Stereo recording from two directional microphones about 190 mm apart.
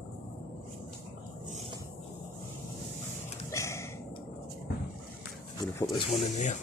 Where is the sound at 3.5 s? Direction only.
15° left (ahead or behind).